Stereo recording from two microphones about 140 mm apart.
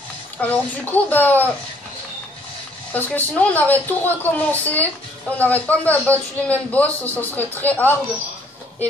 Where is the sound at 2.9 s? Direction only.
10° left (ahead or behind).